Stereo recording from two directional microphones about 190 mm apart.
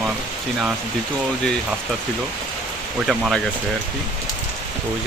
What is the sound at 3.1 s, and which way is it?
Speech, centre (ahead or behind).